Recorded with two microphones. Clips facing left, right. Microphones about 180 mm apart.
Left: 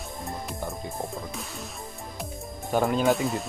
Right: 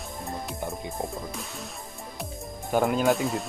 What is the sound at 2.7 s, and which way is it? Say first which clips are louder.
Music: even; 5° right (ahead or behind).